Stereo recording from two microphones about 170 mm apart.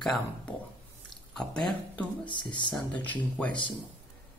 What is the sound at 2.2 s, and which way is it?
Speech, 25° left (ahead or behind).